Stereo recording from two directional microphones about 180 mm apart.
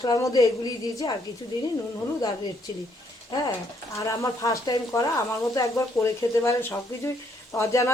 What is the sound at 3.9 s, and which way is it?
A woman's voice, 15° left (ahead or behind).